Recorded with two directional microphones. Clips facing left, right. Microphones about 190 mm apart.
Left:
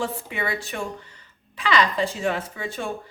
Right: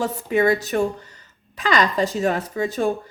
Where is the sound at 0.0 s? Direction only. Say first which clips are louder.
Right 9 dB; 40° right (ahead or behind).